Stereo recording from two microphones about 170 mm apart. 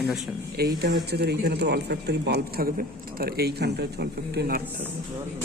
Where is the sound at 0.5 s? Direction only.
70° right (ahead or behind).